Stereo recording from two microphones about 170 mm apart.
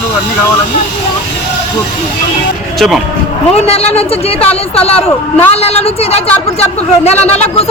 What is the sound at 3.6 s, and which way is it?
Speech, 35° left (ahead or behind).